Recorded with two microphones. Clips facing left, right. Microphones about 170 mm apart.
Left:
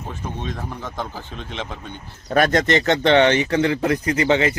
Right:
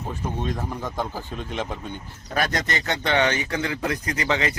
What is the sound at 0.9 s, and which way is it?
Speech, 10° right (ahead or behind).